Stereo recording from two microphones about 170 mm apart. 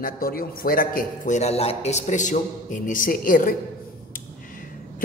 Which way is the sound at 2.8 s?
50° left (ahead or behind).